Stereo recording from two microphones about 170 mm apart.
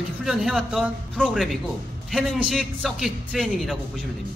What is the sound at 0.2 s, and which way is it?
Speech, centre (ahead or behind).